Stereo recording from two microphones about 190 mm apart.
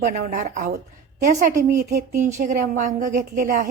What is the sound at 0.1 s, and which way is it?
Speech, 40° right (ahead or behind).